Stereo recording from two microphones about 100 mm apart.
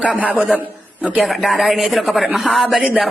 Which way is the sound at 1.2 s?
Centre (ahead or behind).